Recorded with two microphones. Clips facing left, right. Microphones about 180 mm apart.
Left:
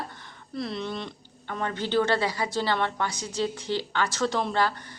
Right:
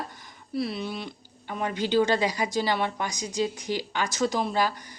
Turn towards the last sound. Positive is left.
turn(degrees=-10)  # may be behind; listen again after turning